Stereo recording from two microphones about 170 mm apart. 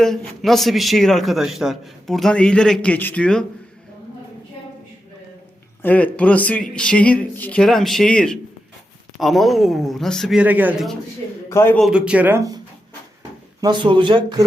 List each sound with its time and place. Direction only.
0.0 s a man's voice: centre (ahead or behind)
5.8 s a man's voice: 10° left (ahead or behind); by 10.8 s 10° right (ahead or behind)
11.4 s a man's voice: 15° left (ahead or behind)
11.8 s speech: 5° right (ahead or behind)
13.6 s speech: 25° right (ahead or behind)